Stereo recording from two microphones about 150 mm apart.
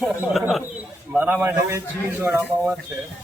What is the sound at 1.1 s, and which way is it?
A man's voice, 15° right (ahead or behind).